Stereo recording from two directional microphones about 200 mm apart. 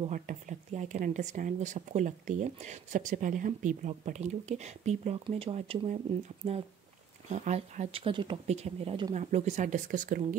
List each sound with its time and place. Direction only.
0.1 s speech: 40° right (ahead or behind)
7.2 s speech: 35° right (ahead or behind)